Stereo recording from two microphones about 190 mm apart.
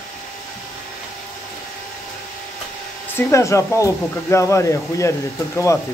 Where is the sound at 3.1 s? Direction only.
15° left (ahead or behind).